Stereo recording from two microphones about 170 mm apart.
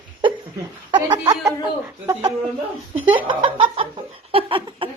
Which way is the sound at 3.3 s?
30° right (ahead or behind).